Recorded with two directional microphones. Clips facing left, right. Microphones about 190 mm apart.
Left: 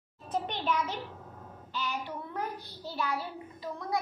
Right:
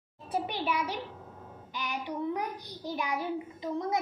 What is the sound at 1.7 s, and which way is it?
A child's voice, 15° right (ahead or behind).